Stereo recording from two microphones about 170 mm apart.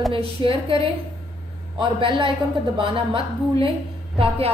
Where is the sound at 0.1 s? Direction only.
30° right (ahead or behind).